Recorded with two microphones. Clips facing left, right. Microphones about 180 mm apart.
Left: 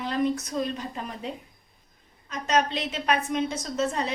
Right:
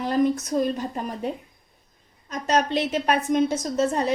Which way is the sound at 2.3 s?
45° right (ahead or behind).